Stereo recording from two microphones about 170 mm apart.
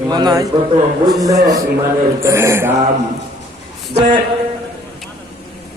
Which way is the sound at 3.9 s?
55° right (ahead or behind).